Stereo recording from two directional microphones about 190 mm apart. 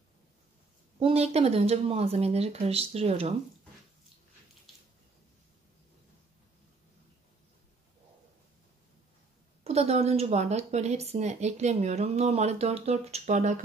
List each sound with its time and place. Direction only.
0.9 s a woman's voice: 30° right (ahead or behind)
4.7 s a sound: centre (ahead or behind)
9.6 s a woman's voice: 35° right (ahead or behind)